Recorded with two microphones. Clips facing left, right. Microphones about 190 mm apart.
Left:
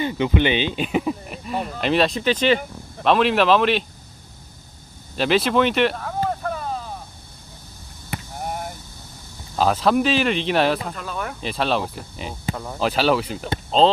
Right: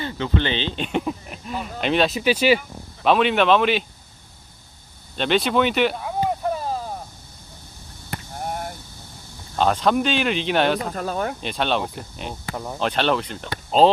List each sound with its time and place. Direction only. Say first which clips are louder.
0.0 s speech: left 4 dB; 15° left (ahead or behind); by 3.8 s centre (ahead or behind)
5.1 s speech: left 1 dB; 5° left (ahead or behind)
6.0 s a sound: right 1 dB; 10° right (ahead or behind)
6.5 s a sound: right 2 dB; 30° right (ahead or behind)
8.1 s a sound: even; 5° left (ahead or behind)
9.6 s speech: left 1 dB; 5° left (ahead or behind)
10.9 s speech: right 5 dB; 40° right (ahead or behind)
11.3 s speech: left 1 dB; centre (ahead or behind)
12.5 s speech: right 1 dB; 10° right (ahead or behind)
12.8 s speech: left 2 dB; 5° left (ahead or behind)
13.7 s speech: right 1 dB; 10° right (ahead or behind)